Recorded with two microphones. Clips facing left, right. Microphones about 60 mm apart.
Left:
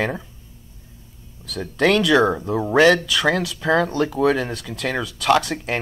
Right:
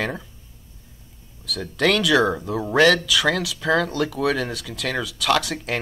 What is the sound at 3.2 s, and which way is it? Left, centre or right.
Speech, left.